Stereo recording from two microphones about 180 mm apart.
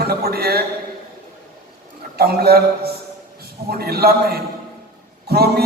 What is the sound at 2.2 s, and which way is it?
A man's voice, 60° right (ahead or behind).